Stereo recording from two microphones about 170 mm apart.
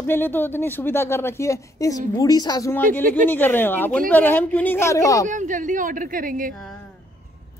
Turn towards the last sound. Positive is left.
turn(degrees=-55)  # may be behind; listen again after turning